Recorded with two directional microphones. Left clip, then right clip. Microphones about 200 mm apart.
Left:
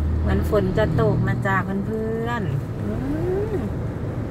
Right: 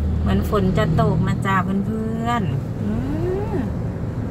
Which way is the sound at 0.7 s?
10° right (ahead or behind).